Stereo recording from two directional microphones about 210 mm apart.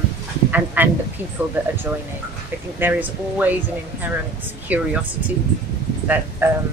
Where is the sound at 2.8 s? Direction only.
10° right (ahead or behind).